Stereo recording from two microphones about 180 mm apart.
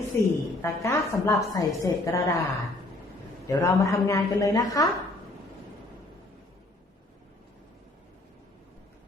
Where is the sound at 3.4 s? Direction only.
15° left (ahead or behind).